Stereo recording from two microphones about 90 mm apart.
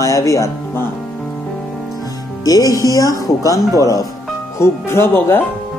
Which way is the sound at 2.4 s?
40° left (ahead or behind).